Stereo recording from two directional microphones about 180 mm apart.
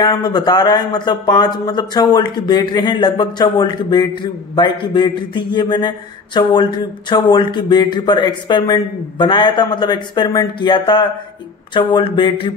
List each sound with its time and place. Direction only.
0.0 s speech: 20° left (ahead or behind)